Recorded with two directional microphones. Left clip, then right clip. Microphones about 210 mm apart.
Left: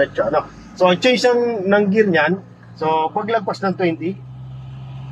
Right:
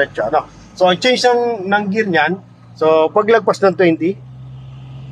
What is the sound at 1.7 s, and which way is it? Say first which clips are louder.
Speech: left 1 dB; 20° right (ahead or behind).